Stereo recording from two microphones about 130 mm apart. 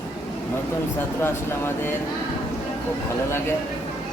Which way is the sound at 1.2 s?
15° left (ahead or behind).